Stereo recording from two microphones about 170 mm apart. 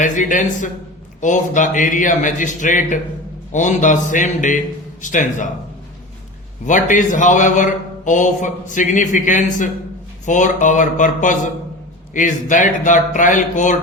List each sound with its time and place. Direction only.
0.0 s speech: 50° left (ahead or behind)
6.7 s speech: 50° left (ahead or behind)